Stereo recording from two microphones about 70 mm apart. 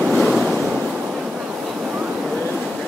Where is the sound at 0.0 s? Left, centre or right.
Centre.